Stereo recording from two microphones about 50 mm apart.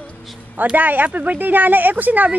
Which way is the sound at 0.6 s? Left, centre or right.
Right.